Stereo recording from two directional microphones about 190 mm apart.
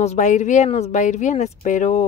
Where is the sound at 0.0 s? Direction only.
40° left (ahead or behind).